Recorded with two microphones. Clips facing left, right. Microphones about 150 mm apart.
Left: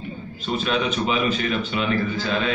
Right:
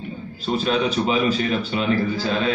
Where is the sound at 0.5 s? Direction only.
35° right (ahead or behind).